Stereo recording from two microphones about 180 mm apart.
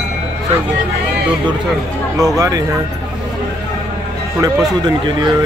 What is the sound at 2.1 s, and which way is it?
Speech, 20° right (ahead or behind).